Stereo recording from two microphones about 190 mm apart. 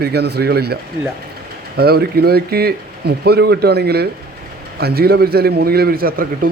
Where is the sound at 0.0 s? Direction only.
60° right (ahead or behind).